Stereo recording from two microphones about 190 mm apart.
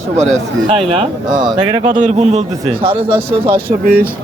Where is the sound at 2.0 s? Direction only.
35° right (ahead or behind).